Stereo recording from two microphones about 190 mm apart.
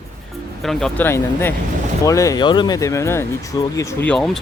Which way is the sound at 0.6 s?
5° left (ahead or behind).